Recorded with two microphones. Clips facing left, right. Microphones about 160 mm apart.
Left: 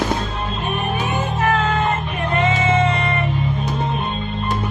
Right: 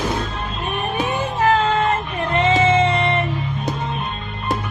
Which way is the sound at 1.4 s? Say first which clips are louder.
Right 3 dB; 30° right (ahead or behind).